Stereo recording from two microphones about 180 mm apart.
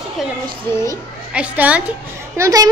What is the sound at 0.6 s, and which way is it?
Speech, 15° left (ahead or behind).